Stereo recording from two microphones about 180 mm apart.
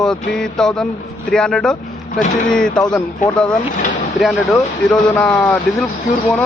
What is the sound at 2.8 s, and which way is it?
Speech, 5° left (ahead or behind).